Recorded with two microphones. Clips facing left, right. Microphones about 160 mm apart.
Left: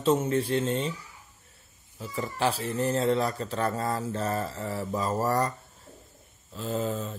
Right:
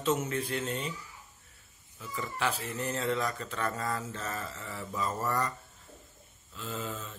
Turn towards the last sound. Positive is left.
turn(degrees=35)  # may be behind; listen again after turning